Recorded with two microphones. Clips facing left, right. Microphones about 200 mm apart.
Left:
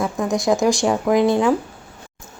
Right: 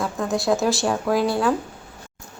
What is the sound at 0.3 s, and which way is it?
Speech, 15° left (ahead or behind).